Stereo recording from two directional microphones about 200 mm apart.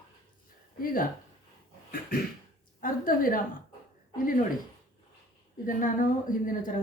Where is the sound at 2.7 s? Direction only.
45° left (ahead or behind).